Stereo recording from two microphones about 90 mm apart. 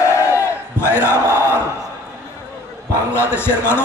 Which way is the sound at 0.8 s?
25° left (ahead or behind).